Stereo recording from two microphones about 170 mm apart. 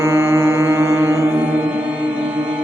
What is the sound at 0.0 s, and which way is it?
Music, 15° right (ahead or behind).